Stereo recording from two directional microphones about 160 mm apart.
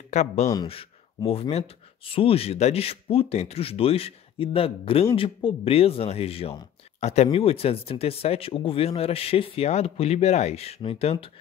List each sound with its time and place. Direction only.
0.1 s speech: 45° left (ahead or behind)